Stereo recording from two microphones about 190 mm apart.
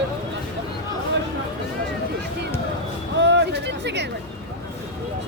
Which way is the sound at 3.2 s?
65° right (ahead or behind).